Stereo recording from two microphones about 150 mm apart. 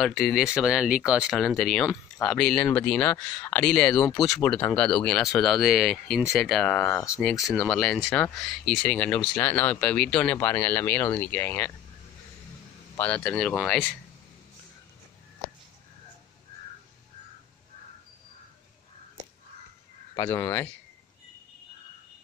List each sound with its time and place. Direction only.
0.0 s speech: centre (ahead or behind)
12.9 s speech: 10° left (ahead or behind)
20.2 s speech: 20° left (ahead or behind)